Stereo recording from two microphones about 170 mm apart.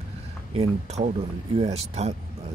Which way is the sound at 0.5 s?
40° right (ahead or behind).